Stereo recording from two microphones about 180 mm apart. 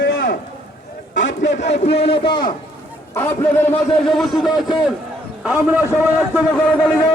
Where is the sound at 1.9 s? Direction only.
30° left (ahead or behind).